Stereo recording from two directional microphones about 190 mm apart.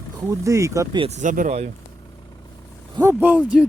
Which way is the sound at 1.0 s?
40° right (ahead or behind).